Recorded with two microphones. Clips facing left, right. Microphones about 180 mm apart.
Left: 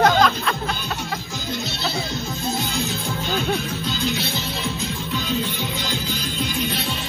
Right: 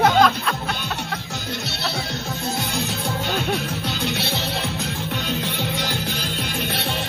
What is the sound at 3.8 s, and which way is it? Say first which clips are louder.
Music: left 1 dB; 70° right (ahead or behind).